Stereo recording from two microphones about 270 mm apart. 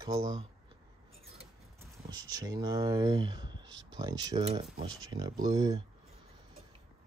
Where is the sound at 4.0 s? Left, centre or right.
Centre.